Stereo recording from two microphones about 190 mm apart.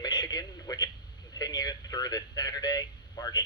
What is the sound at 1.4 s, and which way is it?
A man's voice, 20° left (ahead or behind).